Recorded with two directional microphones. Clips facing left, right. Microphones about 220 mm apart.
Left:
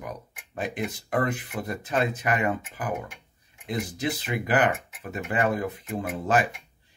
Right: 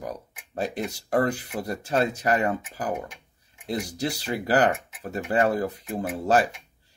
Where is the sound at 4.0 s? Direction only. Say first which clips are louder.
Right 1 dB; 40° right (ahead or behind).